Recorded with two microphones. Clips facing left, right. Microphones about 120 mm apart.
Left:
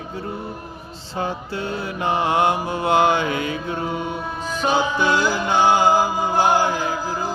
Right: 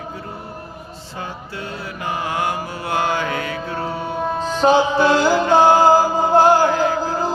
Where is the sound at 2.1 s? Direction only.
25° left (ahead or behind).